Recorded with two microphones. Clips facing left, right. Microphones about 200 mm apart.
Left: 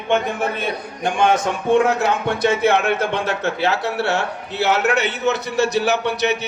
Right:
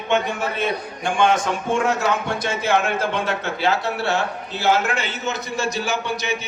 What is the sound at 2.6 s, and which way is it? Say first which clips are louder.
A man's voice: left 3 dB; 65° left (ahead or behind).